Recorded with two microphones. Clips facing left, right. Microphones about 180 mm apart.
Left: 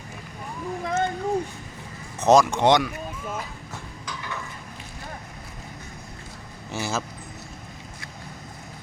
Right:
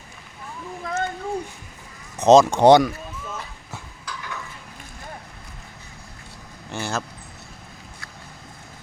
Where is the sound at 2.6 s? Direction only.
35° right (ahead or behind).